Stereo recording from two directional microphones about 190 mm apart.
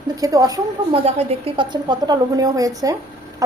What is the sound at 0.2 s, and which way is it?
Speech, 20° right (ahead or behind).